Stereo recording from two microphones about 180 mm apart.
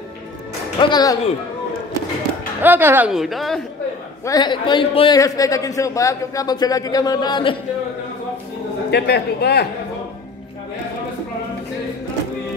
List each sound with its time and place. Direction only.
0.7 s a man's voice: 25° left (ahead or behind)
2.6 s speech: 10° right (ahead or behind)
4.3 s a man's voice: 25° left (ahead or behind)
8.9 s a man's voice: 65° left (ahead or behind)